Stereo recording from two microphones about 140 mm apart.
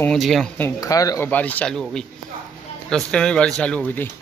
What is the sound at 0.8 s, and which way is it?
Speech, 25° left (ahead or behind).